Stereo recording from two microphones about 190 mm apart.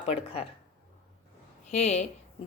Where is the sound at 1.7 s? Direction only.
35° left (ahead or behind).